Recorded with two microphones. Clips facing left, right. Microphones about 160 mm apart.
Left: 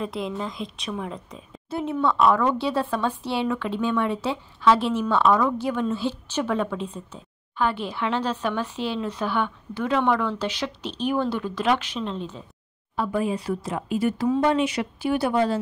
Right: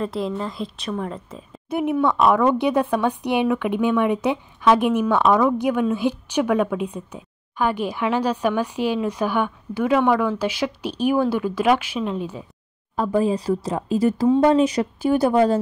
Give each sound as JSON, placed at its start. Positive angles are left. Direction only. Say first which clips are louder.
{"t": 0.0, "sound": "speech", "louder": "right 4 dB", "side_deg": 0}
{"t": 1.7, "sound": "speech", "louder": "right 4 dB", "side_deg": -15}
{"t": 12.9, "sound": "a woman's voice", "louder": "right 5 dB", "side_deg": -40}